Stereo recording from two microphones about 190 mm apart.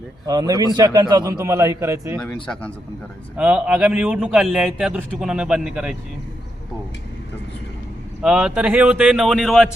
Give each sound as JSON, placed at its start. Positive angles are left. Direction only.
{"t": 0.3, "sound": "a man's voice", "side_deg": -20}
{"t": 2.1, "sound": "speech", "side_deg": 5}
{"t": 3.3, "sound": "a man's voice", "side_deg": -5}
{"t": 8.2, "sound": "a man's voice", "side_deg": -5}